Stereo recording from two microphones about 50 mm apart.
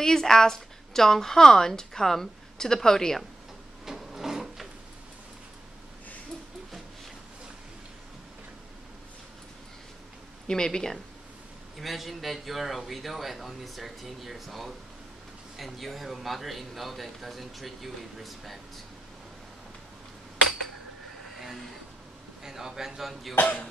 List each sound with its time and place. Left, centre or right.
0.0 s speech: centre
3.8 s wood: centre
10.4 s speech: centre
11.8 s a man's voice: centre
22.4 s speech: centre
23.4 s speech: left